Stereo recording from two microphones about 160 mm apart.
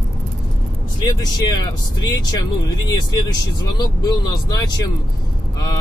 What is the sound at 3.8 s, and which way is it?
Speech, 25° left (ahead or behind).